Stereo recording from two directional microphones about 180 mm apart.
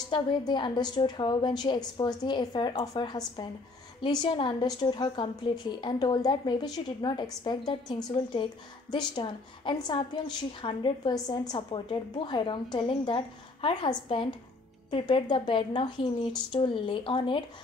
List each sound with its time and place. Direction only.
0.1 s a woman's voice: 25° left (ahead or behind)